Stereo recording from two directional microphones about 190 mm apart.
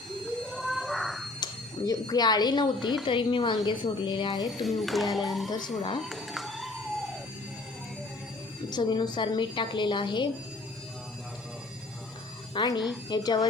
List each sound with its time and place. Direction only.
0.5 s cat: centre (ahead or behind)
1.4 s a woman's voice: 20° left (ahead or behind)
4.6 s speech: centre (ahead or behind)
5.5 s a woman's voice: 20° left (ahead or behind)
6.0 s a sound: centre (ahead or behind)
8.7 s a woman's voice: 25° left (ahead or behind)
12.5 s a woman's voice: 25° left (ahead or behind)